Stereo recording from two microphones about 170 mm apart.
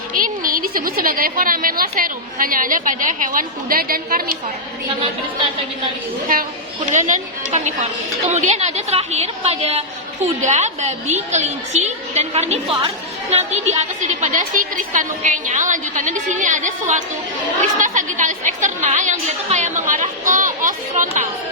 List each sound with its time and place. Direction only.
0.1 s a woman's voice: 55° right (ahead or behind)
6.9 s a woman's voice: 45° right (ahead or behind)